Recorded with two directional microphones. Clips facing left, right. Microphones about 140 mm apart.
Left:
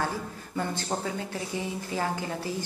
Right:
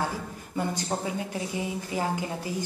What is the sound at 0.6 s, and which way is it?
A woman's voice, 15° right (ahead or behind).